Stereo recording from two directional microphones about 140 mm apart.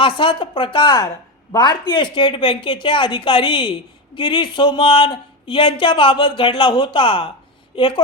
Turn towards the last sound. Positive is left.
turn(degrees=35)  # may be behind; listen again after turning